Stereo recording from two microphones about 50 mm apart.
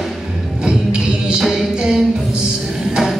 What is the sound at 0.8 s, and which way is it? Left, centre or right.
Music, centre.